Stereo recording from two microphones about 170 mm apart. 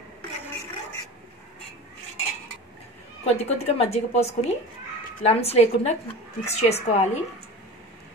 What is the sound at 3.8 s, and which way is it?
A woman's voice, 40° left (ahead or behind).